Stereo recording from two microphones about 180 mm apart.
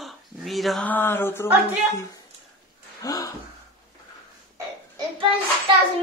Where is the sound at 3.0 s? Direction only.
20° left (ahead or behind).